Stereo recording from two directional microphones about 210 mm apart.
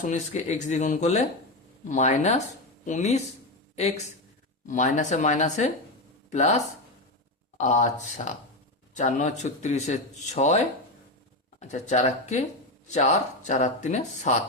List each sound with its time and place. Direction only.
0.1 s speech: 35° left (ahead or behind)
7.6 s speech: 35° left (ahead or behind)
11.7 s speech: 35° left (ahead or behind)